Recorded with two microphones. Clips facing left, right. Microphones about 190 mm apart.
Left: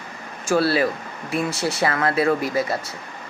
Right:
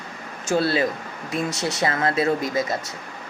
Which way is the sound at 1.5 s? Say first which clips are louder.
Left 2 dB; 20° right (ahead or behind).